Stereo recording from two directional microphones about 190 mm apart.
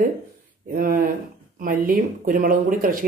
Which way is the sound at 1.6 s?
45° right (ahead or behind).